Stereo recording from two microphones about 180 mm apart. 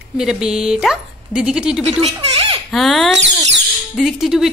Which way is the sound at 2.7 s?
Centre (ahead or behind).